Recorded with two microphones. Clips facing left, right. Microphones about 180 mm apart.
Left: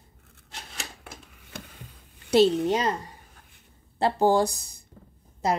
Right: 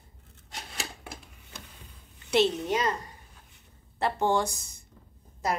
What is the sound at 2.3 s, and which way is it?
Speech, 35° left (ahead or behind).